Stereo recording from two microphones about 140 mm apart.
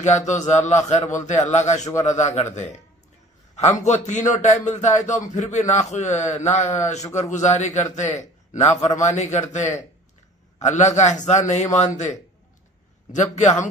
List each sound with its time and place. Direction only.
0.0 s a man's voice: 55° left (ahead or behind)